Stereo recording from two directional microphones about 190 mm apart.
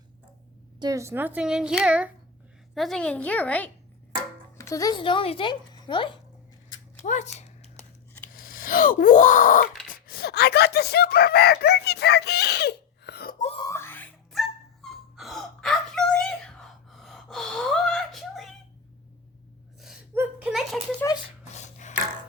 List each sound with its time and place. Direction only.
0.8 s a child's voice: 20° right (ahead or behind); by 6.1 s 25° left (ahead or behind)
7.0 s a sound: 40° left (ahead or behind)
8.3 s speech: 50° left (ahead or behind)
13.6 s music: 15° left (ahead or behind)
20.1 s whimper: 5° right (ahead or behind)
21.2 s dog: 35° left (ahead or behind)